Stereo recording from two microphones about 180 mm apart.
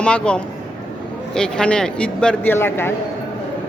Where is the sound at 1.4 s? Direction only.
5° left (ahead or behind).